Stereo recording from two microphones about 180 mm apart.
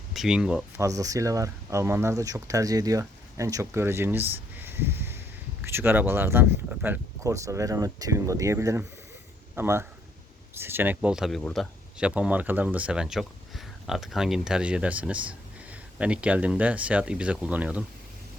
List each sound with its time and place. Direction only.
0.1 s speech: 5° right (ahead or behind)
0.8 s speech: 20° right (ahead or behind)